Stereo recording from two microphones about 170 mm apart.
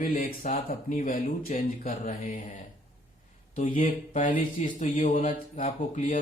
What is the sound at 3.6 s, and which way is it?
Speech, 45° left (ahead or behind).